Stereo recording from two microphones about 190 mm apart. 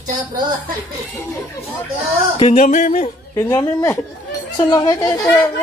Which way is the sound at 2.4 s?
40° left (ahead or behind).